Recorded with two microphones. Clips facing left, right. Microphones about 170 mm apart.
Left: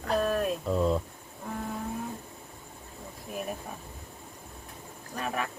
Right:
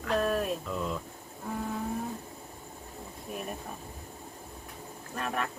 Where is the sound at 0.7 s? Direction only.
35° left (ahead or behind).